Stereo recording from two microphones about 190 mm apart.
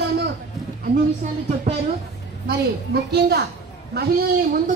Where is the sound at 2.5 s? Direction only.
55° right (ahead or behind).